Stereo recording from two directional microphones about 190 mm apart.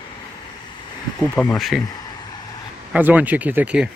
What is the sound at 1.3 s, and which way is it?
Speech, 5° left (ahead or behind).